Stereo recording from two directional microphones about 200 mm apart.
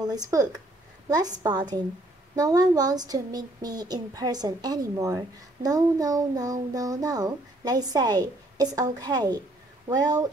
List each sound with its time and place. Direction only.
0.0 s speech: 20° right (ahead or behind)